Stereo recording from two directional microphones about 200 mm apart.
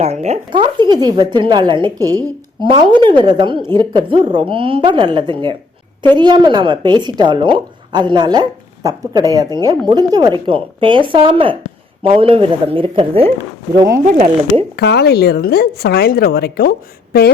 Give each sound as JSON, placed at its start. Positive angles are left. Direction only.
{"t": 0.0, "sound": "a woman's voice", "side_deg": -35}
{"t": 14.8, "sound": "speech", "side_deg": 55}